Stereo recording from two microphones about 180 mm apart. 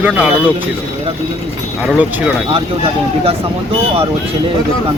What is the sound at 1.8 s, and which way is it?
Speech, 5° right (ahead or behind).